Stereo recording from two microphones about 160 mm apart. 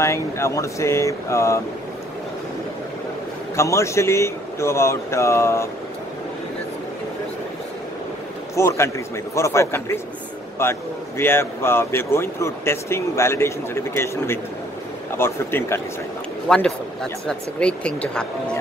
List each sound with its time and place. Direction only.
0.0 s speech: 20° left (ahead or behind)
3.5 s speech: 20° left (ahead or behind)
8.5 s speech: 15° left (ahead or behind)
16.4 s speech: 5° left (ahead or behind)